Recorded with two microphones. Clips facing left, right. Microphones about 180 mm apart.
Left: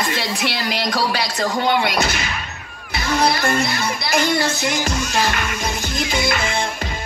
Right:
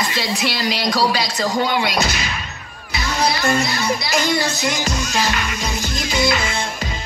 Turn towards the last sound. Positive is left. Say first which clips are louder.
# right 1 dB
turn(degrees=55)  # may be behind; listen again after turning